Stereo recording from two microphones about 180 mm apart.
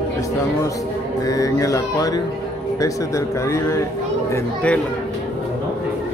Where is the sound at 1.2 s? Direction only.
20° left (ahead or behind).